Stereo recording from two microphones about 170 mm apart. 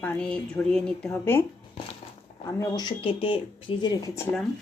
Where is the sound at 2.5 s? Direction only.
20° left (ahead or behind).